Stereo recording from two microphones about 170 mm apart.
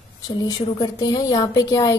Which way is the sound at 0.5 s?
25° left (ahead or behind).